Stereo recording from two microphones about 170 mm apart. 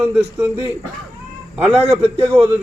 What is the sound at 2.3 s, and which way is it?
Speech, 10° left (ahead or behind).